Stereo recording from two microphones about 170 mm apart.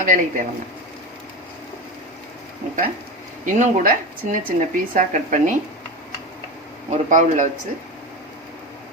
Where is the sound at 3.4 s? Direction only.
50° right (ahead or behind).